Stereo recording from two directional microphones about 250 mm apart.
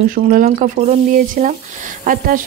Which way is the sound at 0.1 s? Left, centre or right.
Right.